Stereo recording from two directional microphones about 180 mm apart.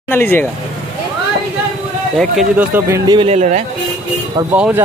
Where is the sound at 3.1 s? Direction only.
30° right (ahead or behind).